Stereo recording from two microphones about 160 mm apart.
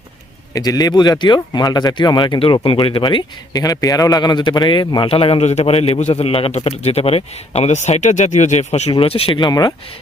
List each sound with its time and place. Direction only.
0.5 s speech: 25° left (ahead or behind)